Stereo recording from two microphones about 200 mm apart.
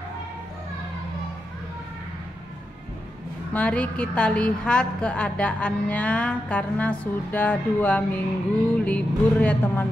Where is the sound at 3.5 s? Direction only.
5° left (ahead or behind).